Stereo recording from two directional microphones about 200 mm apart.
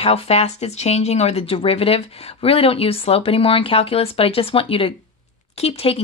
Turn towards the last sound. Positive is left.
turn(degrees=30)  # may be behind; listen again after turning